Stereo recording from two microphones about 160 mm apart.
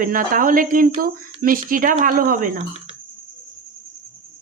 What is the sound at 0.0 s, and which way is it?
A woman's voice, 60° right (ahead or behind).